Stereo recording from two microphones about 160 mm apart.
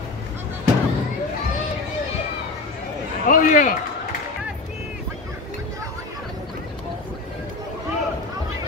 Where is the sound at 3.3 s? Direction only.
60° left (ahead or behind).